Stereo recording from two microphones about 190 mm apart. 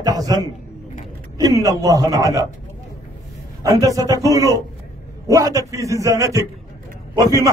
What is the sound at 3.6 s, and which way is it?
A man's voice, 20° right (ahead or behind).